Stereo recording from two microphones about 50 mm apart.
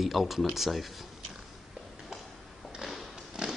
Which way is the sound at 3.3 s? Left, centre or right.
Centre.